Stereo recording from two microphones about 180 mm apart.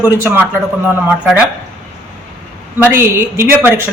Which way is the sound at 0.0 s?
15° right (ahead or behind).